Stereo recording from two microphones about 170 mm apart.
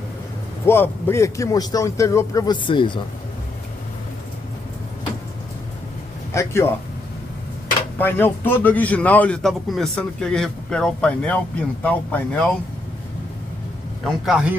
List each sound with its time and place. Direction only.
0.7 s a man's voice: 15° left (ahead or behind); by 3.0 s 30° left (ahead or behind)
6.3 s a man's voice: 15° left (ahead or behind)
8.0 s a man's voice: 10° left (ahead or behind)
14.0 s a man's voice: 5° right (ahead or behind)